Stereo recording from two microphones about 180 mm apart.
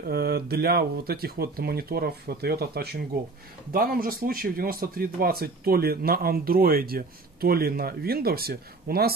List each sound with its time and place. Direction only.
0.1 s speech: 60° right (ahead or behind)